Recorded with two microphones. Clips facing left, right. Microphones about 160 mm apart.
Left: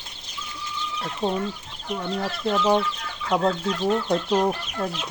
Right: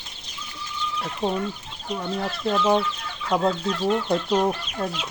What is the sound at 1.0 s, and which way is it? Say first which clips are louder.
Speech: even; centre (ahead or behind).